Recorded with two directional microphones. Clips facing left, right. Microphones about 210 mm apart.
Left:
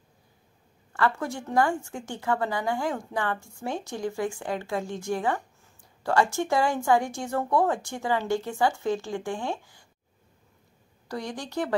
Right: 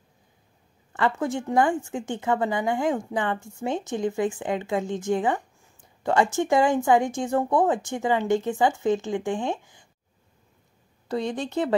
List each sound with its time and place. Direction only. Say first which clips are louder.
0.9 s speech: right 3 dB; 20° right (ahead or behind)
11.1 s speech: right 6 dB; 25° right (ahead or behind)